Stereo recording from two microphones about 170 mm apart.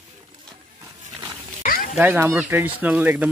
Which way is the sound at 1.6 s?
55° left (ahead or behind).